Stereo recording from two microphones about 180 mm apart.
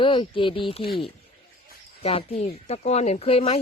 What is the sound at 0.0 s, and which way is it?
Speech, 25° left (ahead or behind).